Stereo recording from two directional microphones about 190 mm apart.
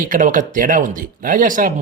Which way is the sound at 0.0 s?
45° right (ahead or behind).